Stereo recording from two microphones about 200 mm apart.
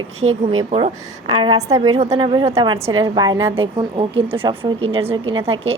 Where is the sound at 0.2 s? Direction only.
35° right (ahead or behind).